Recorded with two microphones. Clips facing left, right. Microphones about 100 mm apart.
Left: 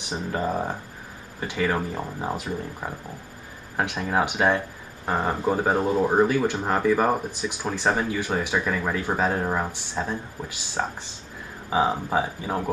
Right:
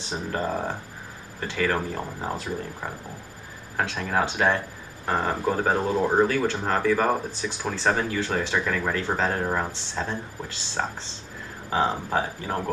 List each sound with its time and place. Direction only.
0.1 s speech: 5° left (ahead or behind)